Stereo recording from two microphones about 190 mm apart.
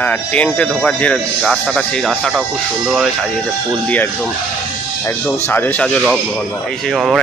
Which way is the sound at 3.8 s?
5° left (ahead or behind).